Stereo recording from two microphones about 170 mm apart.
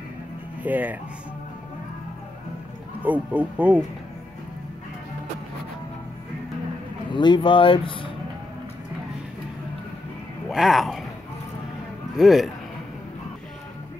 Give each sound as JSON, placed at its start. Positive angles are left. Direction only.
{"t": 0.6, "sound": "speech", "side_deg": -10}
{"t": 3.0, "sound": "speech", "side_deg": -10}
{"t": 7.1, "sound": "speech", "side_deg": 25}
{"t": 10.5, "sound": "speech", "side_deg": 0}
{"t": 12.2, "sound": "speech", "side_deg": 0}